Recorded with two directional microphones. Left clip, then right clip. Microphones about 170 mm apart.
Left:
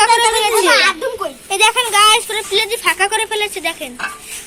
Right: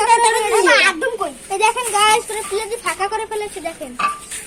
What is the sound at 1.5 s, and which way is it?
Speech, centre (ahead or behind).